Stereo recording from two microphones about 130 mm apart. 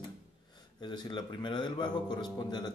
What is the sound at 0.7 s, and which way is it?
A man's voice, 35° left (ahead or behind).